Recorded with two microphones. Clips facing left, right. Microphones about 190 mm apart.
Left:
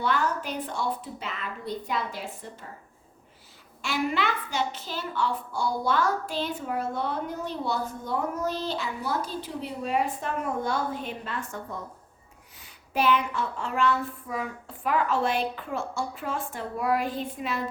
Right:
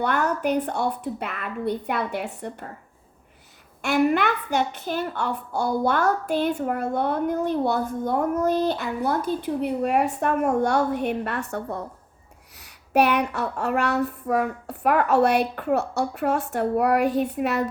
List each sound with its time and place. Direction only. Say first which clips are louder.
0.0 s a woman's voice: right 4 dB; 60° right (ahead or behind)
3.8 s a woman's voice: right 7 dB; 55° right (ahead or behind)
12.5 s a sound: right 8 dB; 70° right (ahead or behind)